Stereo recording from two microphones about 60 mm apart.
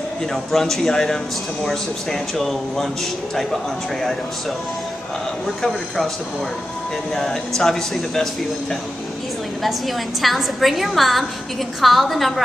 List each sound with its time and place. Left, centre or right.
0.3 s a man's voice: centre
5.6 s a man's voice: centre
7.2 s a man's voice: centre
9.6 s a man's voice: centre